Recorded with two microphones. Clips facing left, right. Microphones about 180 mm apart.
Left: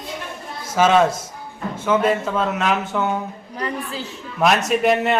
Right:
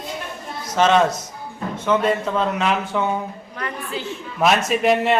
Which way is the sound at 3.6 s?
35° left (ahead or behind).